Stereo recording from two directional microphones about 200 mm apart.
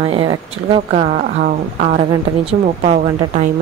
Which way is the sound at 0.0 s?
25° right (ahead or behind).